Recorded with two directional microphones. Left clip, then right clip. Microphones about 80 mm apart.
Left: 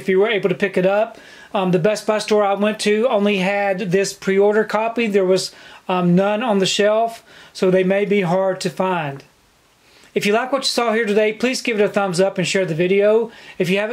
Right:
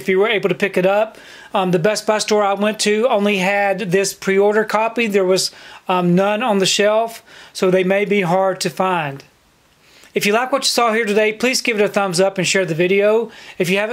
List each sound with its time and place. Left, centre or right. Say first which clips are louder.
0.0 s speech: right 1 dB; right